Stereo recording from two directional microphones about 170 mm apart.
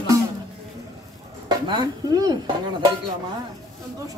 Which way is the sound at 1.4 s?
25° right (ahead or behind).